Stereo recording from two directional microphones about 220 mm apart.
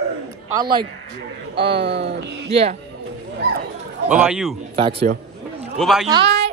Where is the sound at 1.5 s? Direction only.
50° right (ahead or behind).